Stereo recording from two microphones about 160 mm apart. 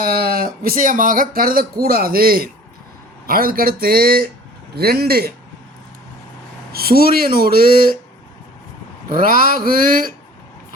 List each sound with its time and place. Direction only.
0.0 s speech: 70° right (ahead or behind)
6.7 s speech: 70° right (ahead or behind)
9.0 s speech: 65° right (ahead or behind)